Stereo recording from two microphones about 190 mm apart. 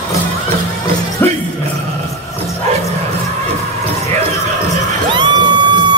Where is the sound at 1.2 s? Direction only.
10° left (ahead or behind).